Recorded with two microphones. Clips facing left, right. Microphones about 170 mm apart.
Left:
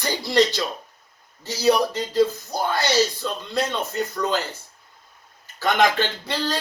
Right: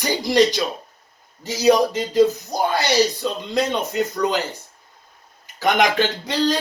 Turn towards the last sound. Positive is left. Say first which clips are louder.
# right 6 dB
turn(degrees=-15)  # may be behind; listen again after turning